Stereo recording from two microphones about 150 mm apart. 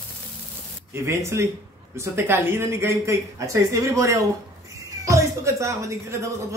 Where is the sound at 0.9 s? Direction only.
20° right (ahead or behind).